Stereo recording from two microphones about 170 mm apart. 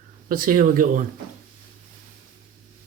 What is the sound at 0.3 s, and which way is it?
Speech, 55° right (ahead or behind).